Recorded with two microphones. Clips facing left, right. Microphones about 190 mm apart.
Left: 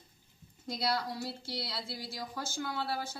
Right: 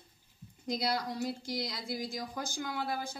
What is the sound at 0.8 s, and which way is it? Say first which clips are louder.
Speech: left 1 dB; 15° right (ahead or behind).